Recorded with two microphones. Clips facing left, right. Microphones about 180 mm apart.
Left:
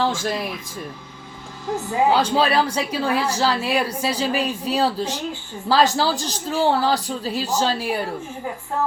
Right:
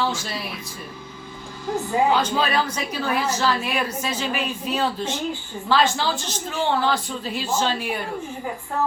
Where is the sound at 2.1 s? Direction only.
35° left (ahead or behind).